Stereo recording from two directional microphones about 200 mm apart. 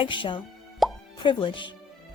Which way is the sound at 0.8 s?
Centre (ahead or behind).